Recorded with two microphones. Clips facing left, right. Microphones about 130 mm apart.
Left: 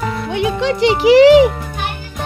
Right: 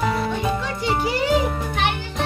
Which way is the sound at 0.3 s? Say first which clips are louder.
Left 7 dB; 85° left.